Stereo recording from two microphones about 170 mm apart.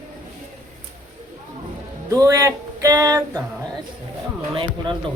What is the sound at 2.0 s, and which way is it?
Music, 20° right (ahead or behind).